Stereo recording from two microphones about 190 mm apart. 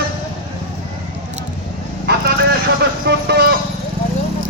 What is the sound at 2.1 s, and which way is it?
Vehicle, 60° right (ahead or behind).